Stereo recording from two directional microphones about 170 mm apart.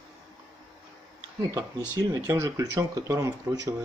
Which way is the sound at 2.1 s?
20° right (ahead or behind).